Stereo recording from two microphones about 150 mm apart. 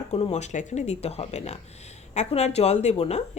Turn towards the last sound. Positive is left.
turn(degrees=45)  # may be behind; listen again after turning